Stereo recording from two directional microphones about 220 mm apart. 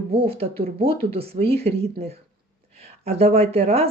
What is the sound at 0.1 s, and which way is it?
Speech, 25° right (ahead or behind).